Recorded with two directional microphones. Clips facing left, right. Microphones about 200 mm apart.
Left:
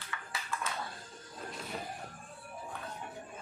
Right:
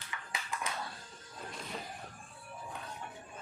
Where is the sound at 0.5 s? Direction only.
15° right (ahead or behind).